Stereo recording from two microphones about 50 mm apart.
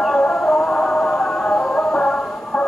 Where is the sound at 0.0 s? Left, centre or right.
Centre.